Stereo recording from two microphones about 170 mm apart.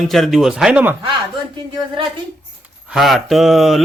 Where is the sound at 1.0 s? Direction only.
30° right (ahead or behind).